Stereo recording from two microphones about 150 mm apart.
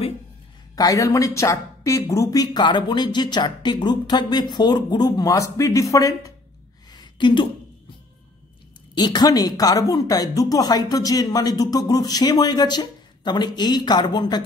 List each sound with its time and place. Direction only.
0.7 s a woman's voice: 20° left (ahead or behind)
6.9 s a sound: 30° left (ahead or behind)
8.9 s a woman's voice: 25° left (ahead or behind)